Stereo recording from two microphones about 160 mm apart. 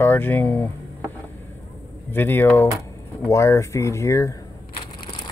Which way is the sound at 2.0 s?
15° left (ahead or behind).